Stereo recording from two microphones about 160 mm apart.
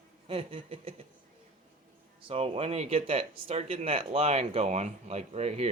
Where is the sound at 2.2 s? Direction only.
35° right (ahead or behind).